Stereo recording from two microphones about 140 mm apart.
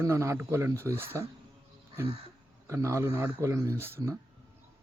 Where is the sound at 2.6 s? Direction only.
20° right (ahead or behind).